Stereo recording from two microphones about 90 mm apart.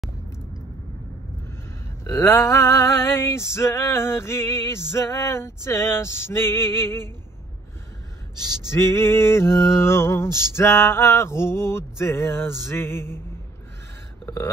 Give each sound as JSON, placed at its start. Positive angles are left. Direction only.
{"t": 2.0, "sound": "male singing", "side_deg": 30}
{"t": 8.7, "sound": "male singing", "side_deg": 30}
{"t": 14.2, "sound": "a sound", "side_deg": 25}